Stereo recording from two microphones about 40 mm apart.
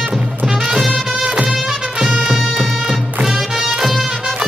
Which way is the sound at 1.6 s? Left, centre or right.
Centre.